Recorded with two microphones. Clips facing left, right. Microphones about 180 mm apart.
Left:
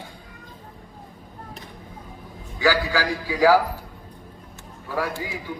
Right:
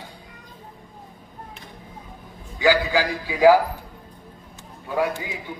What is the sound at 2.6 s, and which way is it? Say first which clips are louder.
Speech: right 2 dB; 20° right (ahead or behind).